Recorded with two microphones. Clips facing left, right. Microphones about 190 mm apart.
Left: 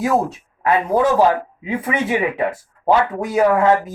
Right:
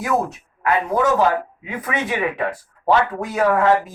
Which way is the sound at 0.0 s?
30° left (ahead or behind).